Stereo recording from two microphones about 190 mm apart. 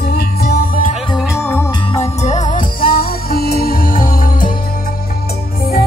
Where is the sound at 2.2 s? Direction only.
40° left (ahead or behind).